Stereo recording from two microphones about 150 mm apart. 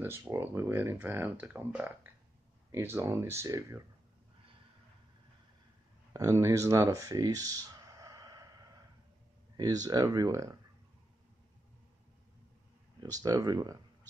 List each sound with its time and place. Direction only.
0.0 s speech: 15° right (ahead or behind)
6.1 s speech: 20° right (ahead or behind)
9.6 s speech: 25° right (ahead or behind)
13.0 s speech: 25° right (ahead or behind)